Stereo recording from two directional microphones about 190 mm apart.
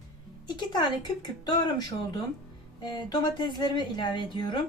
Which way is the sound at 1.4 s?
20° left (ahead or behind).